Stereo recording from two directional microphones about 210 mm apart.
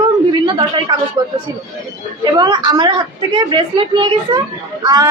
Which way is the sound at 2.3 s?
20° right (ahead or behind).